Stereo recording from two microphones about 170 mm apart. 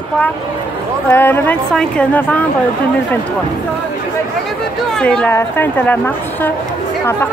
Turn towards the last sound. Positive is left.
turn(degrees=15)  # may be behind; listen again after turning